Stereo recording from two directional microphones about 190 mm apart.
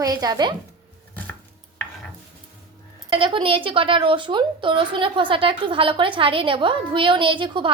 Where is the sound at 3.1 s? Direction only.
30° right (ahead or behind).